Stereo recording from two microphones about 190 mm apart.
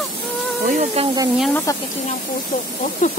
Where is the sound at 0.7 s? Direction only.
40° right (ahead or behind).